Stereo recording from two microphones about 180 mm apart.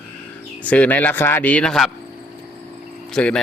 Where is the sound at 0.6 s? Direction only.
10° left (ahead or behind).